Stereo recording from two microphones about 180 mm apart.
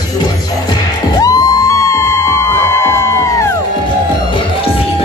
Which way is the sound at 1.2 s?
20° left (ahead or behind).